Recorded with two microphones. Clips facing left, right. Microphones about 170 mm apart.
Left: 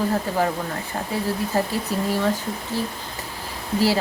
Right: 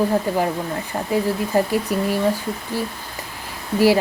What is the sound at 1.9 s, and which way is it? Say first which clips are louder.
Speech: right 1 dB; 15° right (ahead or behind).